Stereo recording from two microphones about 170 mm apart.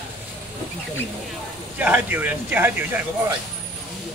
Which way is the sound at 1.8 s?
10° right (ahead or behind).